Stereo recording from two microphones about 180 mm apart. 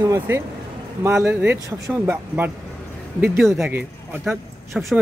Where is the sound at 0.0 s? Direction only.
15° right (ahead or behind).